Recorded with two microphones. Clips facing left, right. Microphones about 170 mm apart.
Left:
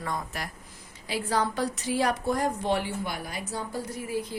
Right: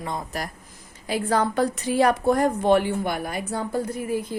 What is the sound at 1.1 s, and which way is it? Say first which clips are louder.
A woman's voice: right 5 dB; 50° right (ahead or behind).